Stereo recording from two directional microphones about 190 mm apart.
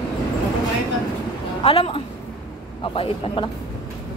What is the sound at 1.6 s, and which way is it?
Speech, 30° left (ahead or behind).